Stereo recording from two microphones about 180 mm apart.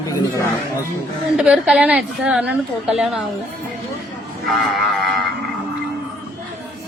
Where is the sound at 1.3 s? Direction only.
5° right (ahead or behind).